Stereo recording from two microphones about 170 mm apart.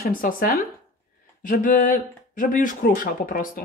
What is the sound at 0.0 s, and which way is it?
Speech, 55° left (ahead or behind).